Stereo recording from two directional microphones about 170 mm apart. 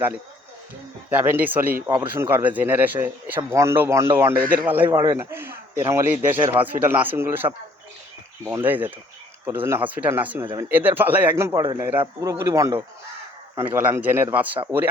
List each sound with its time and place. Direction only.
1.1 s speech: 10° right (ahead or behind)
10.4 s speech: 25° right (ahead or behind)
10.7 s speech: 10° right (ahead or behind)
14.5 s speech: 30° right (ahead or behind)